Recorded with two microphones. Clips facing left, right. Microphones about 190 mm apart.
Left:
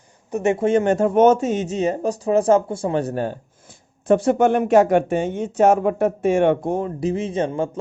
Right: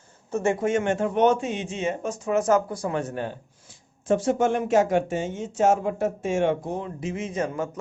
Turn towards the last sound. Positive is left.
turn(degrees=30)  # may be behind; listen again after turning